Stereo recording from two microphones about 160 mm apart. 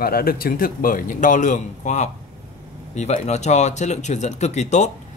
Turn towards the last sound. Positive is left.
turn(degrees=45)  # may be behind; listen again after turning